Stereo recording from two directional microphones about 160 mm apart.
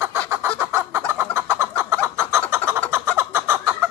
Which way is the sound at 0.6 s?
15° right (ahead or behind).